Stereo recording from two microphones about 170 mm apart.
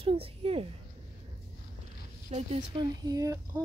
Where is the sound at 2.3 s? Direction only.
40° right (ahead or behind).